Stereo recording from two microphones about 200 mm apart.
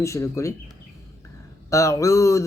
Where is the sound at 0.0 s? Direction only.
15° left (ahead or behind).